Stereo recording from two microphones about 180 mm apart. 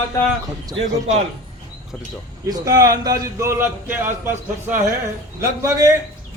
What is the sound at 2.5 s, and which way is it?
Speech, 20° right (ahead or behind).